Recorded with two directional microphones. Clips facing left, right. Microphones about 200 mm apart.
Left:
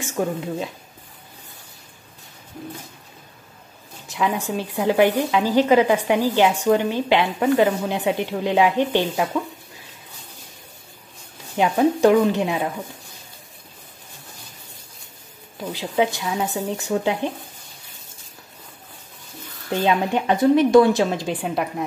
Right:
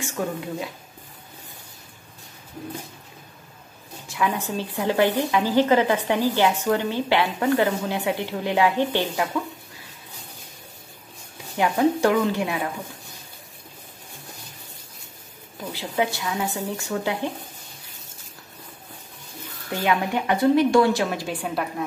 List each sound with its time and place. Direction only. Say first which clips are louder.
4.1 s a woman's voice: left 2 dB; 15° left (ahead or behind)
11.5 s a woman's voice: left 2 dB; 20° left (ahead or behind)
15.7 s a woman's voice: left 4 dB; 20° left (ahead or behind)
19.7 s a woman's voice: left 3 dB; 25° left (ahead or behind)